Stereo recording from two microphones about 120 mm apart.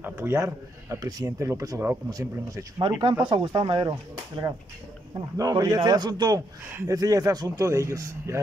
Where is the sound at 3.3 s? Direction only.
45° right (ahead or behind).